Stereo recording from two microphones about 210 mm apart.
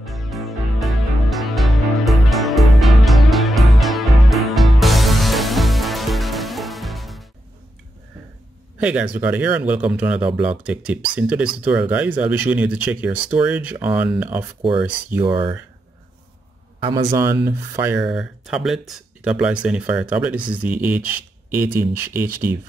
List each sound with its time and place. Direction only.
0.0 s music: centre (ahead or behind)
8.7 s speech: 5° right (ahead or behind)
15.2 s speech: 25° right (ahead or behind)
16.8 s speech: 25° right (ahead or behind)
17.1 s speech: 10° right (ahead or behind)